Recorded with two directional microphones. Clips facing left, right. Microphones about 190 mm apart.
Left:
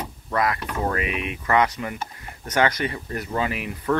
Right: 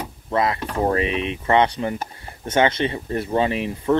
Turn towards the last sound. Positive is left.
turn(degrees=-25)  # may be behind; listen again after turning